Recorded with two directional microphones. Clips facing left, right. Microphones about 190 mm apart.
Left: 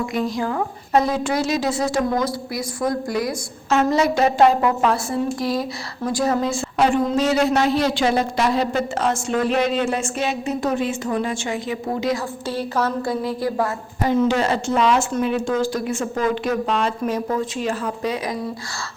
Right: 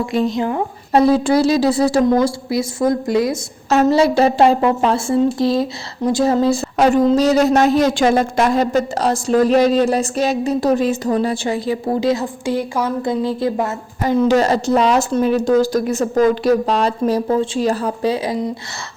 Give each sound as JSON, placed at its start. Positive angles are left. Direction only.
{"t": 0.0, "sound": "speech", "side_deg": -25}
{"t": 0.9, "sound": "speech", "side_deg": -30}
{"t": 14.1, "sound": "speech", "side_deg": -40}